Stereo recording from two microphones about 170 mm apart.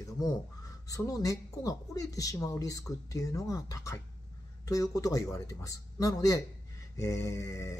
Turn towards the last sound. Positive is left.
turn(degrees=20)  # may be behind; listen again after turning